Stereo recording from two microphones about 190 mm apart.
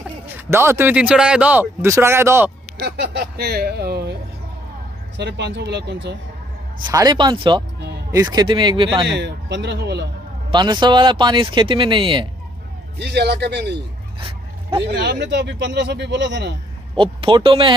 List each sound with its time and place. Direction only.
0.3 s a man's voice: 15° right (ahead or behind)
2.8 s speech: 60° right (ahead or behind)
6.9 s speech: 20° right (ahead or behind)
9.1 s speech: 65° right (ahead or behind)
10.5 s speech: 25° right (ahead or behind)
13.0 s speech: 60° right (ahead or behind)
14.2 s a sound: 25° right (ahead or behind)
14.9 s speech: 65° right (ahead or behind)
16.9 s speech: 25° right (ahead or behind)